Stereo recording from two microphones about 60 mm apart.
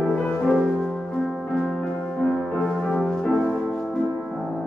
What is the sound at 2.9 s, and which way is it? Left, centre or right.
Music, centre.